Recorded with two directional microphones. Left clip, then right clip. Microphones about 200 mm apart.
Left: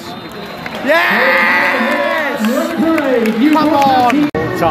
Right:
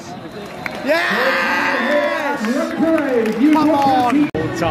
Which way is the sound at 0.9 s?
5° right (ahead or behind).